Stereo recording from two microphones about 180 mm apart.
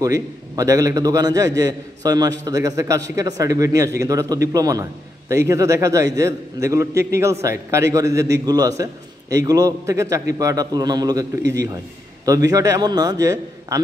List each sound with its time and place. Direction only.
0.0 s a man's voice: 20° right (ahead or behind)
12.3 s a man's voice: 20° right (ahead or behind)